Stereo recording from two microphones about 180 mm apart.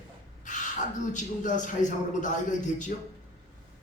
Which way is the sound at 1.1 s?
45° left (ahead or behind).